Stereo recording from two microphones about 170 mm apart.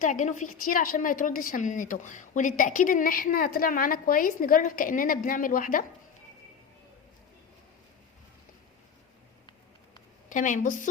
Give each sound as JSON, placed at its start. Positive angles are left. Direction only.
{"t": 0.0, "sound": "a woman's voice", "side_deg": 50}
{"t": 10.2, "sound": "a woman's voice", "side_deg": 50}